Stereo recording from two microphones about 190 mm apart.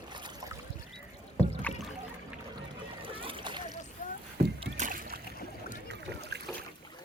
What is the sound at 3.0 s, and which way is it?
Splash, 30° right (ahead or behind).